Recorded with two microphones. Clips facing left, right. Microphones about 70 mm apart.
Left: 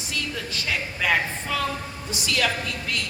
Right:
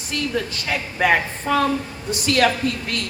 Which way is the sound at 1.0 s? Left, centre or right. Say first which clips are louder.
Right 6 dB; right.